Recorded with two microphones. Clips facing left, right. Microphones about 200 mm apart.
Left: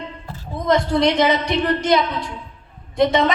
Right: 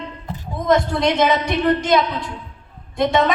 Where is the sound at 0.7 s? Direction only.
50° right (ahead or behind).